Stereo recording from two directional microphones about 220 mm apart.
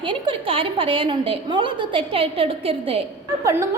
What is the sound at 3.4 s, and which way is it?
Speech, 15° right (ahead or behind).